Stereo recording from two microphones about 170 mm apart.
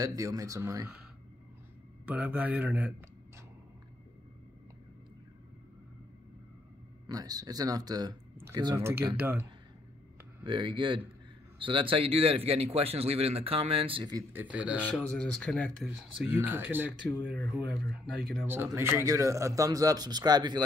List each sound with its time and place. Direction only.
0.0 s a man's voice: 20° right (ahead or behind)
2.0 s a man's voice: 10° right (ahead or behind)
7.1 s a man's voice: 20° right (ahead or behind)
9.1 s a man's voice: 10° right (ahead or behind)
10.4 s a man's voice: 30° right (ahead or behind)
14.3 s a man's voice: 10° right (ahead or behind)
15.0 s speech: 5° left (ahead or behind)
16.3 s a man's voice: 10° right (ahead or behind)
17.7 s speech: centre (ahead or behind)
18.5 s a man's voice: 15° right (ahead or behind)